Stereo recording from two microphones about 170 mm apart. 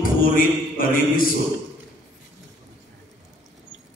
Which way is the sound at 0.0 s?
55° left (ahead or behind).